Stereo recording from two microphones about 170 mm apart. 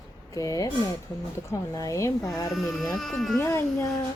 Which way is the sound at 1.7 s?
20° left (ahead or behind).